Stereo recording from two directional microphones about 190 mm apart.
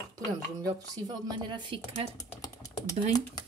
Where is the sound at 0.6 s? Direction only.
20° right (ahead or behind).